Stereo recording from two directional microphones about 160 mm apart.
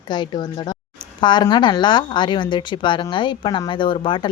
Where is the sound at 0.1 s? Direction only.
25° left (ahead or behind).